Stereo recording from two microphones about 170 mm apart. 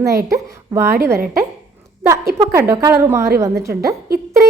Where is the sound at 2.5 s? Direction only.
15° right (ahead or behind).